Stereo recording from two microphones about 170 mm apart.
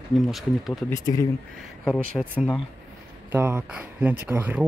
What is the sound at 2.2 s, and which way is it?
Speech, centre (ahead or behind).